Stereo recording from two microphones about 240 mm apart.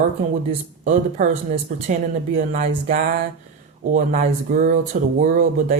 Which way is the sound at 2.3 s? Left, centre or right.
Right.